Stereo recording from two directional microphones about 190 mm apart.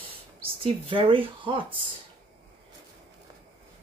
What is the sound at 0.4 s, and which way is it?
Speech, 30° right (ahead or behind).